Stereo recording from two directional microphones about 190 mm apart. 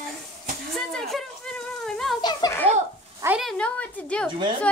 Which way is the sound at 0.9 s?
Centre (ahead or behind).